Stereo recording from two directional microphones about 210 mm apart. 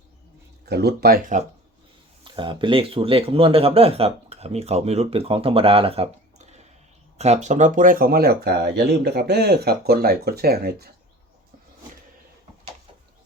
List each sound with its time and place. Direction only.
0.6 s speech: 50° right (ahead or behind)
2.2 s speech: 20° right (ahead or behind); by 10.9 s 50° right (ahead or behind)